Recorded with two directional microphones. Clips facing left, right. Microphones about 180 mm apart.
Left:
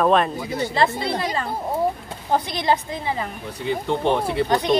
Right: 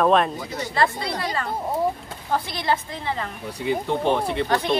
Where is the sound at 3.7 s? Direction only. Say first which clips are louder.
Left 1 dB; centre (ahead or behind).